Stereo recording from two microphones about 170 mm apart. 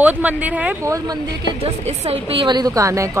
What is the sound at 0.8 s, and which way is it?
Speech, 20° right (ahead or behind).